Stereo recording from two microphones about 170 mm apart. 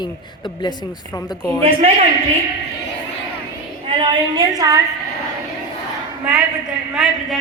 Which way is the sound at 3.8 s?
30° right (ahead or behind).